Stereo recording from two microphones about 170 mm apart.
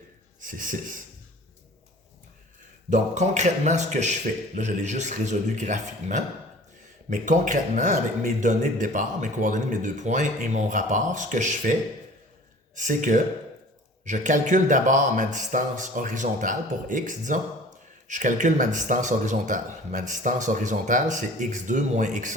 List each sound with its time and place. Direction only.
0.4 s speech: 50° right (ahead or behind)
2.9 s speech: 45° right (ahead or behind)
12.7 s speech: 50° right (ahead or behind)